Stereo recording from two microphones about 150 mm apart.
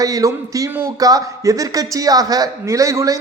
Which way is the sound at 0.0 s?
25° right (ahead or behind).